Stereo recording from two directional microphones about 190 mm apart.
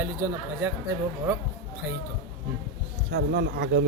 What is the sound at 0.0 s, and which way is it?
Speech, 15° right (ahead or behind).